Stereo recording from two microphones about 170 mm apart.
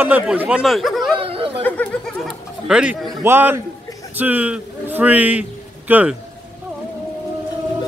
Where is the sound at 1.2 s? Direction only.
35° right (ahead or behind).